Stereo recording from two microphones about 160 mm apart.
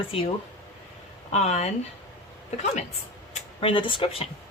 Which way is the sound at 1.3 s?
45° left (ahead or behind).